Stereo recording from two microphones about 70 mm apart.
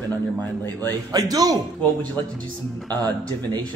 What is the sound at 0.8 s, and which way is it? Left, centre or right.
Speech, right.